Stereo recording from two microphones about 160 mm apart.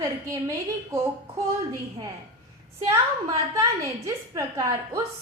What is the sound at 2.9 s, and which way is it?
A child's voice, 20° right (ahead or behind).